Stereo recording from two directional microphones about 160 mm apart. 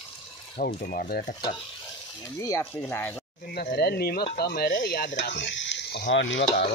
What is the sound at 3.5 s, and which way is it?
Speech, 70° left (ahead or behind).